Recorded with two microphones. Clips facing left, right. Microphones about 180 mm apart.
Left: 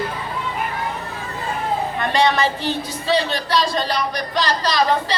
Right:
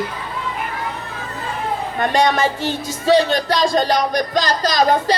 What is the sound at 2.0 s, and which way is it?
A woman's voice, 45° right (ahead or behind).